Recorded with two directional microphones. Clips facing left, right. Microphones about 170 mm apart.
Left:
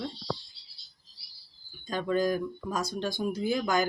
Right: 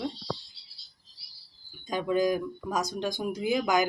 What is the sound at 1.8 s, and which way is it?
Speech, 15° right (ahead or behind).